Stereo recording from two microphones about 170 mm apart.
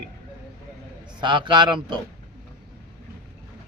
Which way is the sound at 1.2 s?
25° right (ahead or behind).